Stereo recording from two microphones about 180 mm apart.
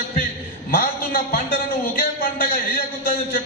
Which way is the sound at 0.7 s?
55° left (ahead or behind).